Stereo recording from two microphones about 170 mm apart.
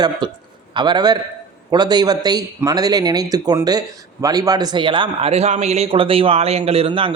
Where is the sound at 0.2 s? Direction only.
25° right (ahead or behind).